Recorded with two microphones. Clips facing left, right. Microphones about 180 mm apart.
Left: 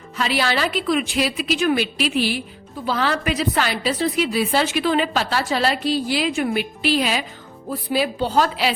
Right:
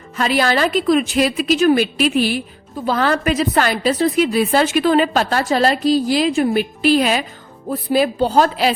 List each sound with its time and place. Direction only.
0.2 s a woman's voice: 45° right (ahead or behind)